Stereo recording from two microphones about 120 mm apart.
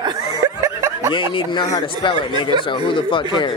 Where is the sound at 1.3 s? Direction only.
40° left (ahead or behind).